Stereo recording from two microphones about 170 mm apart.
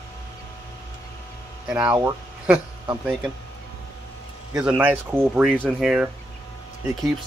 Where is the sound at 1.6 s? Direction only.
5° right (ahead or behind).